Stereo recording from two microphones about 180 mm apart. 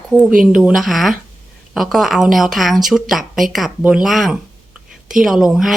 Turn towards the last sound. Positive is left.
turn(degrees=0)  # may be behind; listen again after turning